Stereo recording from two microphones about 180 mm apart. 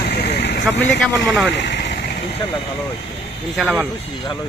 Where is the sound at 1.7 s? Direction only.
80° left.